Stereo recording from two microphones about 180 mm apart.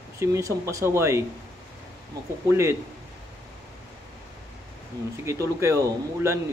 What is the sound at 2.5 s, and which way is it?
Speech, 15° right (ahead or behind).